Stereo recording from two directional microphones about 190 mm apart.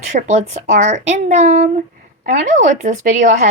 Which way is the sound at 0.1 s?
40° right (ahead or behind).